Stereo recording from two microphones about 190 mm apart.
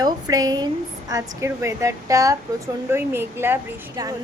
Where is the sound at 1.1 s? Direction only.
15° right (ahead or behind).